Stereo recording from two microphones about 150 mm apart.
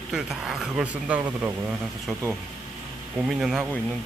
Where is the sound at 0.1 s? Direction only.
5° right (ahead or behind).